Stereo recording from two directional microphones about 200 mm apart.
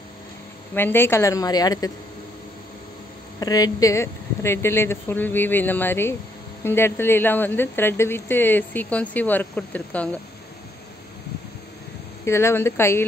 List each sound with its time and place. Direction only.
0.7 s speech: 10° left (ahead or behind)
3.3 s speech: 20° left (ahead or behind)
12.3 s speech: 10° left (ahead or behind)